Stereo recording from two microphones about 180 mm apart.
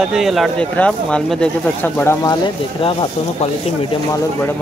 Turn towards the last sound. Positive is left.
turn(degrees=30)  # may be behind; listen again after turning